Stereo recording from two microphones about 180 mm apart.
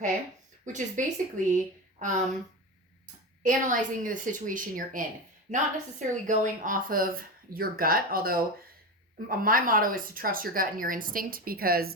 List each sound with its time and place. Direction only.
0.6 s speech: 45° right (ahead or behind)
3.4 s speech: 45° right (ahead or behind)
5.5 s a woman's voice: 35° right (ahead or behind); by 11.9 s 55° right (ahead or behind)